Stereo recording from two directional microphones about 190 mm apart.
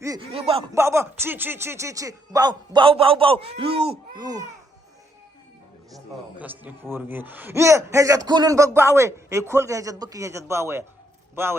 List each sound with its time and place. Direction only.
0.2 s speech: 30° right (ahead or behind)
0.7 s speech: 15° right (ahead or behind)
6.3 s a man's voice: 10° right (ahead or behind)